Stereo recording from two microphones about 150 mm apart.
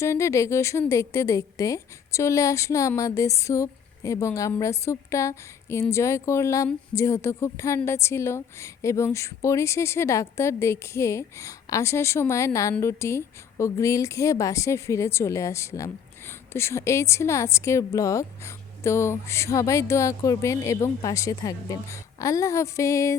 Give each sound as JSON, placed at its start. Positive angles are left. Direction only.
{"t": 0.0, "sound": "a woman's voice", "side_deg": 20}